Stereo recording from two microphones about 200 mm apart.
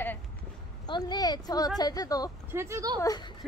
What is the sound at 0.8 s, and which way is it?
A woman's voice, 20° left (ahead or behind).